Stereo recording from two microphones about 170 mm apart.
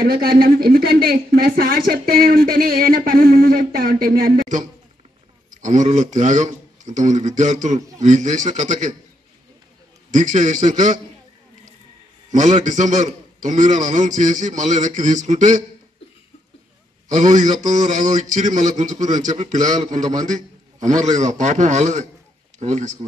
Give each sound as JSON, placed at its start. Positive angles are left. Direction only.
{"t": 0.0, "sound": "a man's voice", "side_deg": -60}
{"t": 10.1, "sound": "a man's voice", "side_deg": -45}
{"t": 12.3, "sound": "a man's voice", "side_deg": -45}
{"t": 17.1, "sound": "a man's voice", "side_deg": -45}